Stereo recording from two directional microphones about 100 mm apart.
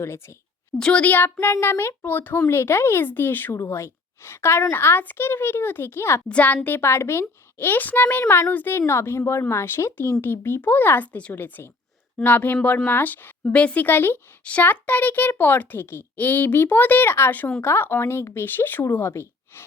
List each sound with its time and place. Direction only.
0.0 s speech: 25° left (ahead or behind)
0.8 s speech: 10° left (ahead or behind); by 6.2 s 25° left (ahead or behind)
6.2 s a woman's voice: 15° left (ahead or behind)
6.7 s a woman's voice: 25° left (ahead or behind)